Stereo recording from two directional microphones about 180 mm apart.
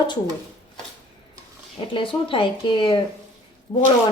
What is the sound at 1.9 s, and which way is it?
A woman's voice, 30° left (ahead or behind).